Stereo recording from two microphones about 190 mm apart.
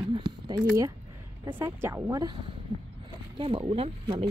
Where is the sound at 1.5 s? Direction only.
10° right (ahead or behind).